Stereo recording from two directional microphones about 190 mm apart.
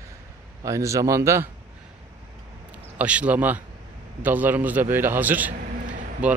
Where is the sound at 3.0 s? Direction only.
5° right (ahead or behind).